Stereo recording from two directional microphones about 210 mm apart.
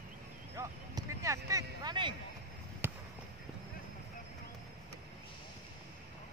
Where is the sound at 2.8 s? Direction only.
10° right (ahead or behind).